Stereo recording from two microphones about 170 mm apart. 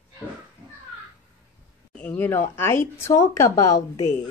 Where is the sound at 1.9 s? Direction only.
10° left (ahead or behind).